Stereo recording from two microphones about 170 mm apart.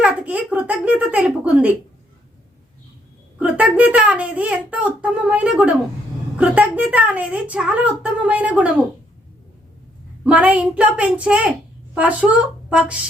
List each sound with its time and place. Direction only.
0.0 s a sound: 5° right (ahead or behind)
3.3 s a woman's voice: 5° right (ahead or behind)
10.2 s a woman's voice: 10° right (ahead or behind)